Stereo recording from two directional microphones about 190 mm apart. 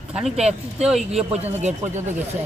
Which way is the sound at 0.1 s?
Centre (ahead or behind).